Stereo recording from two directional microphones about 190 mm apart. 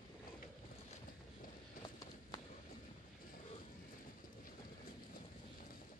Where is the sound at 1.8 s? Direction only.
20° left (ahead or behind).